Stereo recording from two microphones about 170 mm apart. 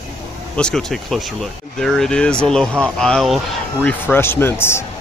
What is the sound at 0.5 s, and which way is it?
Speech, 5° left (ahead or behind).